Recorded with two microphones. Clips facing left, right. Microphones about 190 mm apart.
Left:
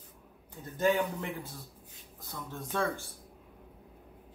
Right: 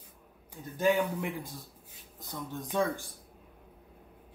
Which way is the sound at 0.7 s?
10° right (ahead or behind).